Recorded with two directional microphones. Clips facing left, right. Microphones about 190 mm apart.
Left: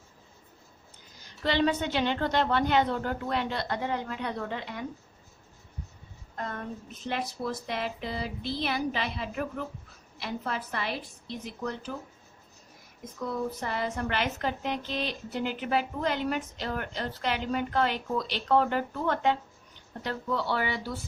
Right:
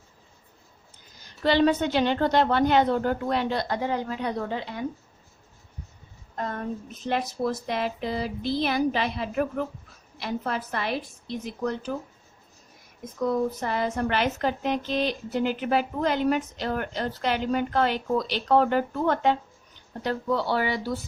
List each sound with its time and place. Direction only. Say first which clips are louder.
1.5 s a woman's voice: right 5 dB; 45° right (ahead or behind)
6.3 s a woman's voice: right 5 dB; 35° right (ahead or behind)
13.2 s a woman's voice: right 7 dB; 45° right (ahead or behind)